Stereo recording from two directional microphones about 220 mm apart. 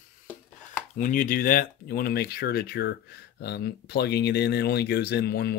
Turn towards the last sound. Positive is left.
turn(degrees=45)  # may be behind; listen again after turning